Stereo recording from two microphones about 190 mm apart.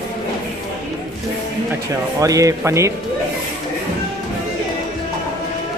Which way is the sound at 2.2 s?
15° right (ahead or behind).